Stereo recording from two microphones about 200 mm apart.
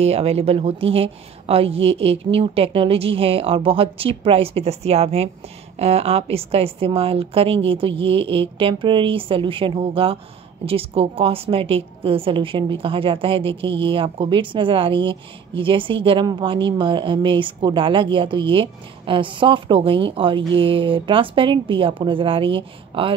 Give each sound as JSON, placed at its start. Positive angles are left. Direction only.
{"t": 0.0, "sound": "a woman's voice", "side_deg": -30}